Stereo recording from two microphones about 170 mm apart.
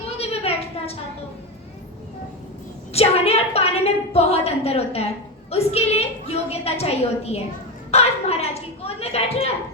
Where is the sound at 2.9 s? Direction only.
35° left (ahead or behind).